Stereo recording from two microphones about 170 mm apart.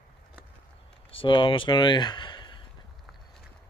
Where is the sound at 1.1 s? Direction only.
30° left (ahead or behind).